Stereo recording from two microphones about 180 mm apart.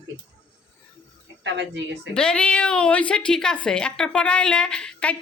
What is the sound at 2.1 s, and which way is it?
A woman's voice, 5° left (ahead or behind).